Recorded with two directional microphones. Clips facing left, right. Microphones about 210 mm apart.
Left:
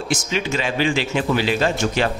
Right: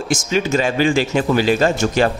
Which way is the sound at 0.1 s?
45° right (ahead or behind).